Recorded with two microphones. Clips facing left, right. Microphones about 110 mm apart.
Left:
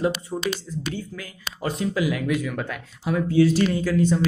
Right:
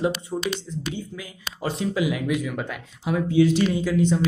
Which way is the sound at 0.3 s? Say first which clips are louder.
Right 1 dB; 5° left (ahead or behind).